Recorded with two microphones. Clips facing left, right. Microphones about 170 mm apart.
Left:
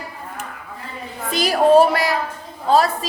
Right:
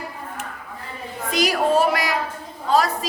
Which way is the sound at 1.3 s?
30° left (ahead or behind).